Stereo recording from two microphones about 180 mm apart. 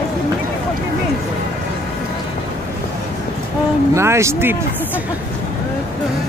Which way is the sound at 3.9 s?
15° right (ahead or behind).